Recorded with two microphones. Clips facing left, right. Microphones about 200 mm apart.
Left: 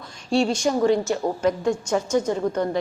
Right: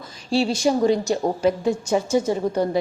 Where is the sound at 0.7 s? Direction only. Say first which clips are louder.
Right 2 dB; 20° right (ahead or behind).